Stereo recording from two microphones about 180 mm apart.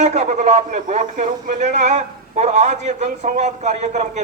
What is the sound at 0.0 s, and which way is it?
Speech, 40° right (ahead or behind).